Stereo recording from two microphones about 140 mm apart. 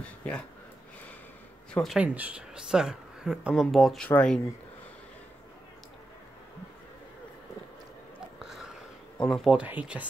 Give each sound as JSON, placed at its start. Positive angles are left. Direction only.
{"t": 0.0, "sound": "speech", "side_deg": 10}
{"t": 1.7, "sound": "speech", "side_deg": 0}
{"t": 2.0, "sound": "speech", "side_deg": -10}
{"t": 8.4, "sound": "a sound", "side_deg": -5}
{"t": 9.2, "sound": "speech", "side_deg": 0}